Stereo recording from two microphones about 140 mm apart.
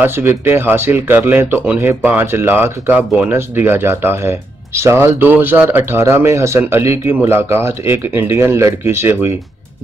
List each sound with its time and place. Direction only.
0.0 s speech: 15° right (ahead or behind)